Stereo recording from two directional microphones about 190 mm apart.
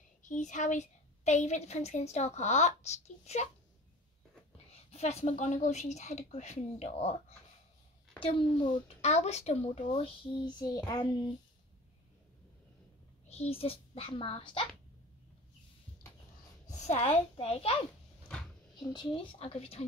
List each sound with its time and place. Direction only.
0.2 s a woman's voice: 40° left (ahead or behind)
4.9 s a woman's voice: 35° left (ahead or behind); by 11.1 s 20° left (ahead or behind)
13.3 s speech: 30° left (ahead or behind)
16.6 s a woman's voice: 40° left (ahead or behind)
18.8 s a woman's voice: 20° left (ahead or behind)